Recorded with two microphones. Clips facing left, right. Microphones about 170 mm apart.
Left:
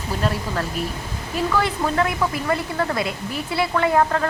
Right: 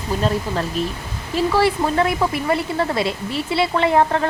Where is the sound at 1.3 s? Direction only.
25° right (ahead or behind).